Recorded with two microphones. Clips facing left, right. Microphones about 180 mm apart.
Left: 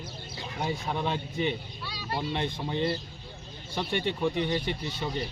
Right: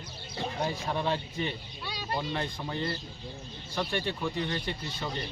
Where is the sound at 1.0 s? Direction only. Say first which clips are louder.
Left 2 dB; 15° left (ahead or behind).